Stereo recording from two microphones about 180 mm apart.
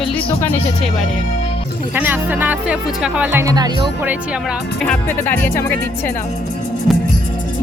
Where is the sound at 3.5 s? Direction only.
25° right (ahead or behind).